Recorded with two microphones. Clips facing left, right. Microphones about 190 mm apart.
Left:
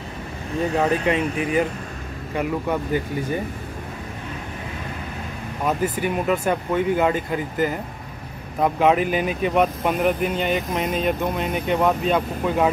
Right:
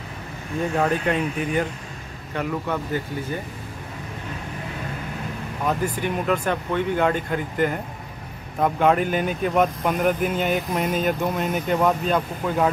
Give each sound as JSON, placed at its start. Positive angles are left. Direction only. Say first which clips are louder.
{"t": 0.7, "sound": "speech", "louder": "left 1 dB", "side_deg": 0}
{"t": 5.7, "sound": "speech", "louder": "left 2 dB", "side_deg": 5}